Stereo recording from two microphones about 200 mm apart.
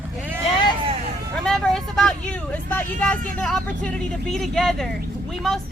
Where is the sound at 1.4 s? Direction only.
Centre (ahead or behind).